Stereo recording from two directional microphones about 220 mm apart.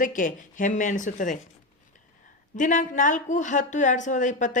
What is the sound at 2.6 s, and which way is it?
Speech, 35° left (ahead or behind).